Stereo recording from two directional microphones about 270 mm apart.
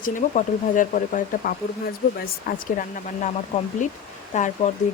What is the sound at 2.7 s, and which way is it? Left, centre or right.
Speech, left.